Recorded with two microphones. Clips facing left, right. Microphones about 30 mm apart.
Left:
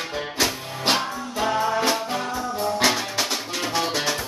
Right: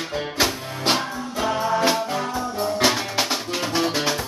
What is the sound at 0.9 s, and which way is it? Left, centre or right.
Music, centre.